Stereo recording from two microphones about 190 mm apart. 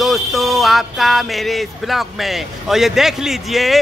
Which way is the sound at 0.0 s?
Centre (ahead or behind).